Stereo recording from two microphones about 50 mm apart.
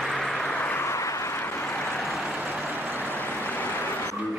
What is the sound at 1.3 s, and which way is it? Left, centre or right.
Vehicle, left.